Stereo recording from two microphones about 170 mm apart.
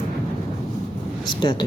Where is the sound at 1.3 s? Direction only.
25° left (ahead or behind).